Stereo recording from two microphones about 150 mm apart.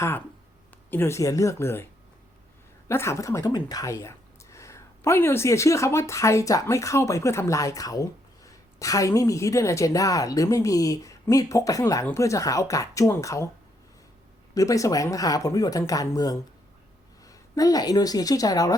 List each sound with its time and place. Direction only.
0.9 s speech: 15° left (ahead or behind)
2.9 s speech: 20° left (ahead or behind)
14.5 s speech: 20° left (ahead or behind)